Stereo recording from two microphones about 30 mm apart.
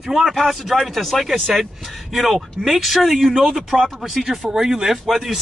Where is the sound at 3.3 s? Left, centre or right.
Right.